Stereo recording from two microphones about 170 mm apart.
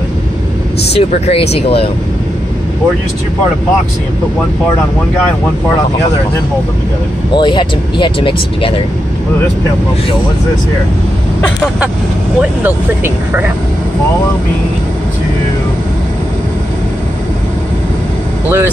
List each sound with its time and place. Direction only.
0.9 s speech: 35° left (ahead or behind)
7.3 s speech: 25° left (ahead or behind)
12.4 s speech: 10° right (ahead or behind)